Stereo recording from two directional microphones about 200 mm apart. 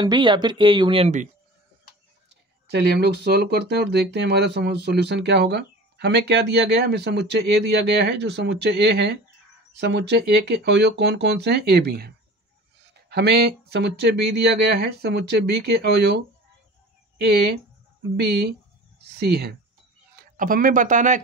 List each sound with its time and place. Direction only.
0.0 s speech: 25° right (ahead or behind)
2.2 s speech: 55° right (ahead or behind)
13.1 s speech: 55° right (ahead or behind)
17.2 s a man's voice: 55° right (ahead or behind); by 21.2 s 40° right (ahead or behind)